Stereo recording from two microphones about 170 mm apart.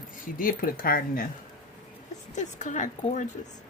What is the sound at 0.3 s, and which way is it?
Speech, 55° left (ahead or behind).